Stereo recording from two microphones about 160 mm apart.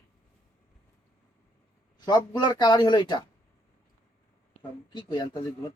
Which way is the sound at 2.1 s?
25° left (ahead or behind).